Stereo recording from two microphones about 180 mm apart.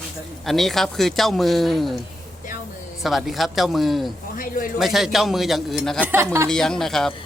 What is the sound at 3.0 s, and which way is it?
Speech, centre (ahead or behind).